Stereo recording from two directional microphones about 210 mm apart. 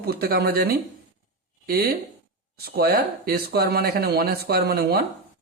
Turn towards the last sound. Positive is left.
turn(degrees=-50)  # may be behind; listen again after turning